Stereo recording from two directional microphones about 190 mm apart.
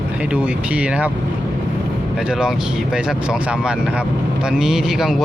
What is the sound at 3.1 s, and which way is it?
Speech, 5° right (ahead or behind).